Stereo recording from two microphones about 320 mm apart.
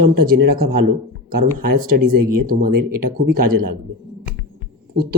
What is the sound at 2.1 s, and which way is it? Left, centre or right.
Speech, right.